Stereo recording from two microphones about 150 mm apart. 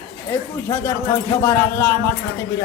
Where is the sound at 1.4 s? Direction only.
15° left (ahead or behind).